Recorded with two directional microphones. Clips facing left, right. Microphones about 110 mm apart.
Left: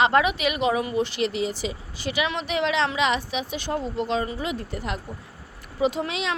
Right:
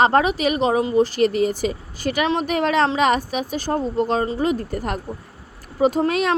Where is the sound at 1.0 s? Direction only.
45° right (ahead or behind).